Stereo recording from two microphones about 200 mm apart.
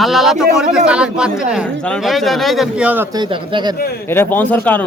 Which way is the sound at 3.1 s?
25° right (ahead or behind).